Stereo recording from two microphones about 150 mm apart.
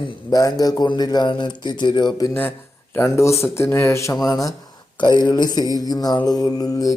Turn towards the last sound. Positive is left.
turn(degrees=25)  # may be behind; listen again after turning